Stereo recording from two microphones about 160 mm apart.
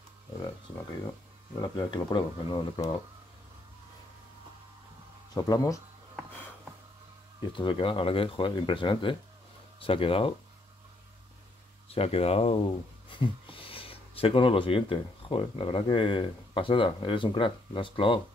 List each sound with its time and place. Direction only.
1.6 s speech: 30° left (ahead or behind)
5.3 s speech: 25° left (ahead or behind)
7.5 s speech: 30° left (ahead or behind)
11.9 s speech: 40° left (ahead or behind)